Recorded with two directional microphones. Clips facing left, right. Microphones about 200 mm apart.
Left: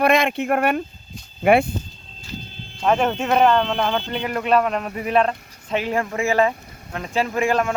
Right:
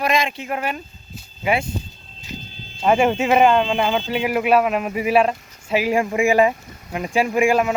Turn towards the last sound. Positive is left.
turn(degrees=-10)  # may be behind; listen again after turning